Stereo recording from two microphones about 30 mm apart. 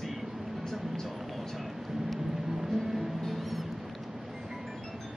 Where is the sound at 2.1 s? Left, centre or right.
Centre.